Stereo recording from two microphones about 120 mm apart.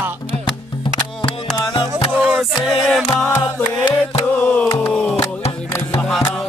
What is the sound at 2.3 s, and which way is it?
Music, 5° right (ahead or behind).